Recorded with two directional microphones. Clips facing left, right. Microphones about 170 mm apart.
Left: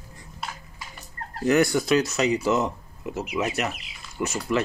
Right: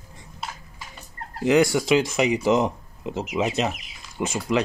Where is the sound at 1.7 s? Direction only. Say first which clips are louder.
Right 2 dB; 20° right (ahead or behind).